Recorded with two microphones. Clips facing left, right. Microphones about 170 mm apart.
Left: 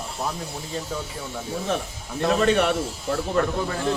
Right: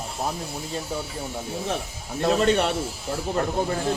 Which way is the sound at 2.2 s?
40° right (ahead or behind).